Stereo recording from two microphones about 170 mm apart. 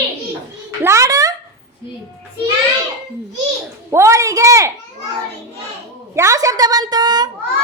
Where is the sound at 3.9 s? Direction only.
15° right (ahead or behind).